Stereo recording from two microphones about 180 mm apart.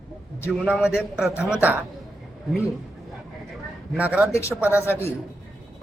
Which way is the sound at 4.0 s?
10° right (ahead or behind).